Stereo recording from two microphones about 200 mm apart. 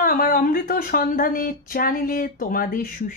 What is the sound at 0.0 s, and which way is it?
Speech, 45° left (ahead or behind).